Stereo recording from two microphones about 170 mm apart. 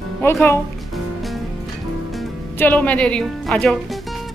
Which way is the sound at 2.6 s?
10° left (ahead or behind).